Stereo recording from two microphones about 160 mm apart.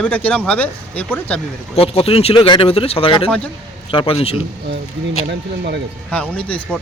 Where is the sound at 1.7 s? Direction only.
35° left (ahead or behind).